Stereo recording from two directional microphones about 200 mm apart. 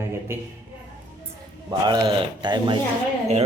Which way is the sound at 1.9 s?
25° right (ahead or behind).